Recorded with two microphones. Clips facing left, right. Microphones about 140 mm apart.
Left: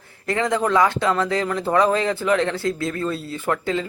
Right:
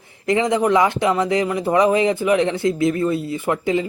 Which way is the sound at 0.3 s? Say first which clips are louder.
Right 4 dB; 15° right (ahead or behind).